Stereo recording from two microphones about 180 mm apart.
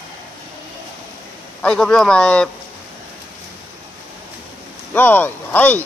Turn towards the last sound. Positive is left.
turn(degrees=10)  # may be behind; listen again after turning